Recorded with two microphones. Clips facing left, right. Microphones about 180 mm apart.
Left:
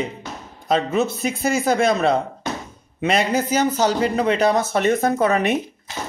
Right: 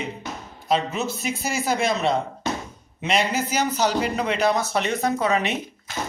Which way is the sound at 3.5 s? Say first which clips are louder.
Left 3 dB; 45° left (ahead or behind).